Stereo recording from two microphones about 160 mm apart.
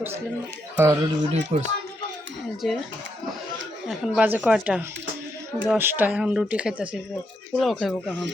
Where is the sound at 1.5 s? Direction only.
40° right (ahead or behind).